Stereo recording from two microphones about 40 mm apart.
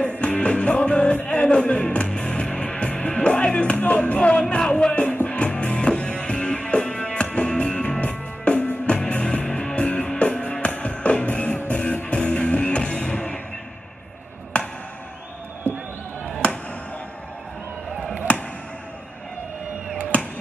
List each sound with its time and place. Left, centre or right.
0.2 s music: left
5.0 s music: left
15.7 s a sound: right
18.3 s music: left
20.1 s music: left